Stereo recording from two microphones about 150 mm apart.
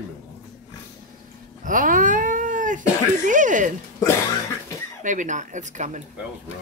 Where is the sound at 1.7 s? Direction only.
60° right (ahead or behind).